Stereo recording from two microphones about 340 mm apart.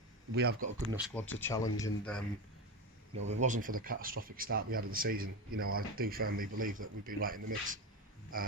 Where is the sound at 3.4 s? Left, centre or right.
Right.